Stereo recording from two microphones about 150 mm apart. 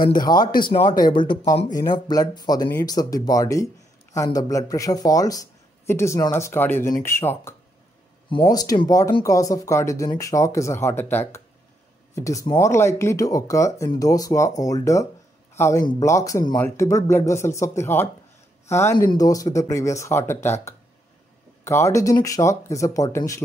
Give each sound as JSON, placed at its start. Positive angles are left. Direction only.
{"t": 0.2, "sound": "speech", "side_deg": 30}
{"t": 8.3, "sound": "a man's voice", "side_deg": 30}